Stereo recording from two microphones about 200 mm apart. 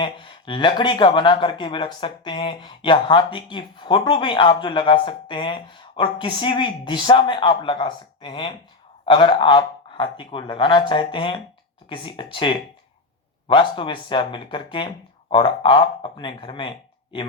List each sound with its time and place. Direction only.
0.0 s speech: 25° left (ahead or behind)